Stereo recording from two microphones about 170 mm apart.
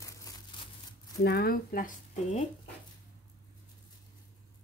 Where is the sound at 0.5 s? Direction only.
25° left (ahead or behind).